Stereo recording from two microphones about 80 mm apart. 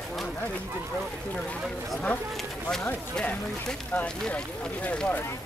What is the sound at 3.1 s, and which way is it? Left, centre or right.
Speech, centre.